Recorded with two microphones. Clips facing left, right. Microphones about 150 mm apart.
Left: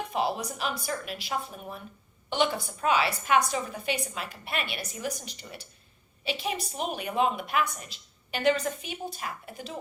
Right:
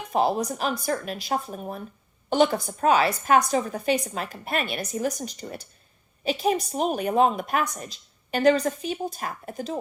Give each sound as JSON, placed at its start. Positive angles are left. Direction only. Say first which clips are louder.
{"t": 0.1, "sound": "a woman's voice", "louder": "right 8 dB", "side_deg": -40}